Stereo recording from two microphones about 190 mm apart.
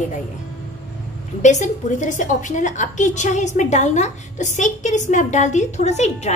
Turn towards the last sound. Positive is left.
turn(degrees=35)  # may be behind; listen again after turning